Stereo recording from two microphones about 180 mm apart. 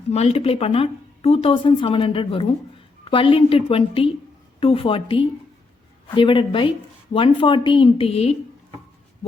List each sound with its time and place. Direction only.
0.1 s a woman's voice: 35° left (ahead or behind)